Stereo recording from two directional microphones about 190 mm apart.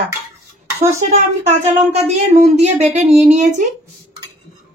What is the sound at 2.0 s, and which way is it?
Speech, 35° right (ahead or behind).